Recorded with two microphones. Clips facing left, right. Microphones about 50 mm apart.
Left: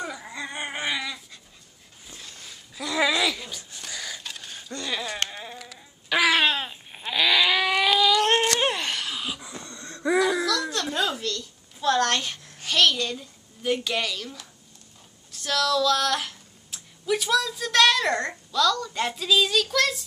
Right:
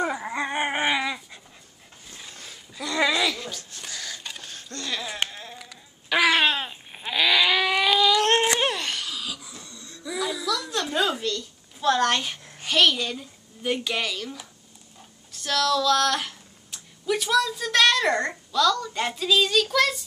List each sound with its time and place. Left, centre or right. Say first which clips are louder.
0.0 s dog: right 7 dB; right
2.7 s a sound: even; centre
5.3 s insect: left 2 dB; centre
5.6 s babbling: left 1 dB; centre
8.6 s a sound: left 1 dB; centre
9.1 s wheeze: left 2 dB; left
10.4 s babbling: left 1 dB; centre
15.3 s a child's voice: even; centre